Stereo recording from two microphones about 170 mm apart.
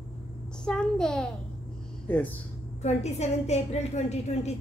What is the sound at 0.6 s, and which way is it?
A child's voice, 5° left (ahead or behind).